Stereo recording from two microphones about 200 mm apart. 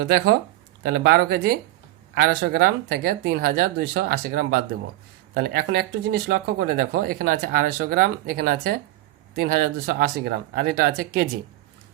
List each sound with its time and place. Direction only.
0.0 s speech: 55° right (ahead or behind)